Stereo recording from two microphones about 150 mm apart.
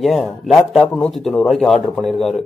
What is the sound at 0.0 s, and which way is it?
A man's voice, centre (ahead or behind).